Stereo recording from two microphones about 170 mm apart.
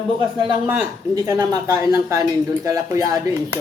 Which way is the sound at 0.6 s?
15° right (ahead or behind).